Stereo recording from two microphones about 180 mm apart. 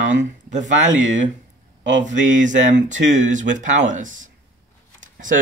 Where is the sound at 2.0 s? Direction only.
45° right (ahead or behind).